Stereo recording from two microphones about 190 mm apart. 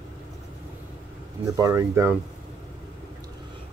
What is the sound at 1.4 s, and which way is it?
Speech, 15° right (ahead or behind).